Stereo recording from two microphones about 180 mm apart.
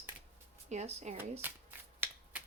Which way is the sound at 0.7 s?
35° right (ahead or behind).